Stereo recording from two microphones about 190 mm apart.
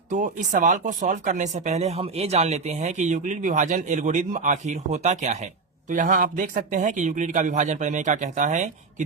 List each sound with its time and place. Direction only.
0.1 s speech: 40° right (ahead or behind)